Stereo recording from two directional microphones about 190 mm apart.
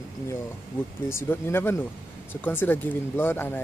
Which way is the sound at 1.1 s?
10° left (ahead or behind).